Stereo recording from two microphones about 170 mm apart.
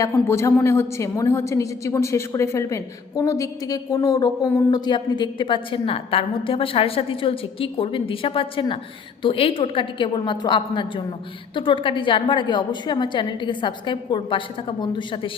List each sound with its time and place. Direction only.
0.0 s a woman's voice: 15° left (ahead or behind)